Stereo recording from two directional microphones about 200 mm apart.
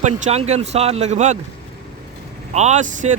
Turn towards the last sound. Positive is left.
turn(degrees=-35)  # may be behind; listen again after turning